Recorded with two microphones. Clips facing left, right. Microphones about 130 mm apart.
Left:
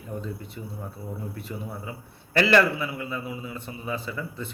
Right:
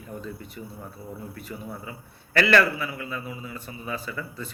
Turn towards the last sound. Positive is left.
turn(degrees=20)  # may be behind; listen again after turning